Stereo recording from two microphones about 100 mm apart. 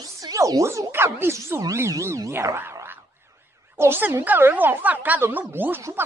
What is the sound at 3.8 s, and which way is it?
Speech, 25° right (ahead or behind).